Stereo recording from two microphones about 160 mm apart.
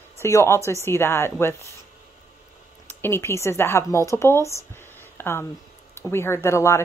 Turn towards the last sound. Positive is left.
turn(degrees=15)  # may be behind; listen again after turning